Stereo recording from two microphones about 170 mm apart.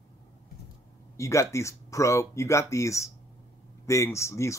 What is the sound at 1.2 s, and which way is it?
Speech, 15° left (ahead or behind).